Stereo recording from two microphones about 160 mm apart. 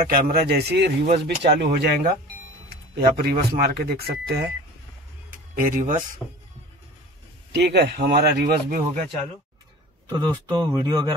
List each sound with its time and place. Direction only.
0.1 s speech: 70° right (ahead or behind); by 2.1 s 90° right
3.2 s speech: 90° right
5.5 s speech: 55° right (ahead or behind)
6.2 s a man's voice: 10° left (ahead or behind)
7.5 s speech: 90° right
8.6 s speech: 60° right (ahead or behind)
10.1 s speech: 25° right (ahead or behind)